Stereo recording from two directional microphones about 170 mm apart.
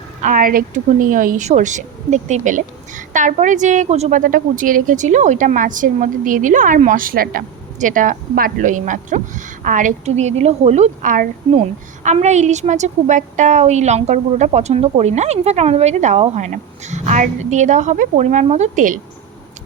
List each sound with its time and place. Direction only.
0.2 s speech: 50° right (ahead or behind)